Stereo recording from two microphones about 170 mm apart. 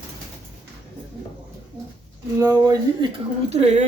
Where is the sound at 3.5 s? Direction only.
40° right (ahead or behind).